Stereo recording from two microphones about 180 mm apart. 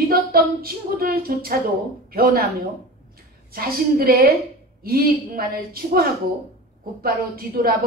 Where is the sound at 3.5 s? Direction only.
55° right (ahead or behind).